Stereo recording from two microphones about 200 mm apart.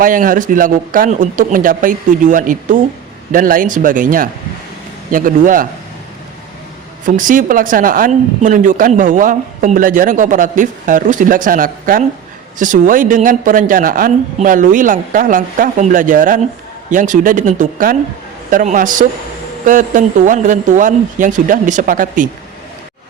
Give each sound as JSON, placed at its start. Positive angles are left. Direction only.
{"t": 0.0, "sound": "a man's voice", "side_deg": -45}
{"t": 7.0, "sound": "a man's voice", "side_deg": -40}